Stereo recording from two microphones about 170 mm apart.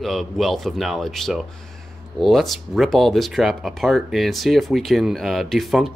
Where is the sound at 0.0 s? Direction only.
Centre (ahead or behind).